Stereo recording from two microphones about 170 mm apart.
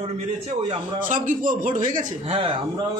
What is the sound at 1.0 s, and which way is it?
Speech, 50° right (ahead or behind).